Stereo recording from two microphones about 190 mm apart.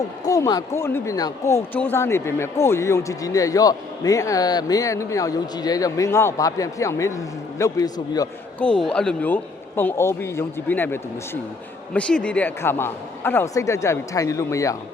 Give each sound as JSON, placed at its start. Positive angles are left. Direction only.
{"t": 0.3, "sound": "speech", "side_deg": 20}
{"t": 8.5, "sound": "speech", "side_deg": 5}